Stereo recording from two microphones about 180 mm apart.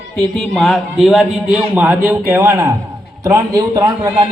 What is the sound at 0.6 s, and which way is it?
A man's voice, centre (ahead or behind).